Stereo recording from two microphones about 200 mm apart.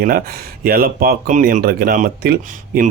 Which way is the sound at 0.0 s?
45° right (ahead or behind).